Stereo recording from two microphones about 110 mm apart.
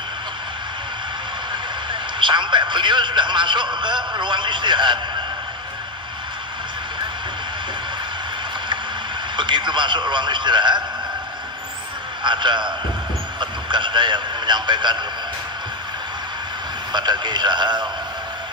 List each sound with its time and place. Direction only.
1.9 s a man's voice: 45° right (ahead or behind)
9.4 s a man's voice: 45° right (ahead or behind)
12.2 s a man's voice: 45° right (ahead or behind)
16.9 s a man's voice: 40° right (ahead or behind)